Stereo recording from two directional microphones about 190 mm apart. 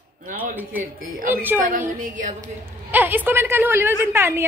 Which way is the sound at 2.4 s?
10° right (ahead or behind).